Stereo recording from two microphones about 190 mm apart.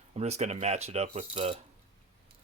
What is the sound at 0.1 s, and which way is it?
Speech, 35° right (ahead or behind).